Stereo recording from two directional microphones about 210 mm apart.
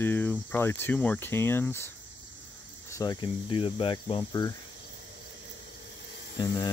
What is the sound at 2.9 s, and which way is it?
Cricket, 20° left (ahead or behind).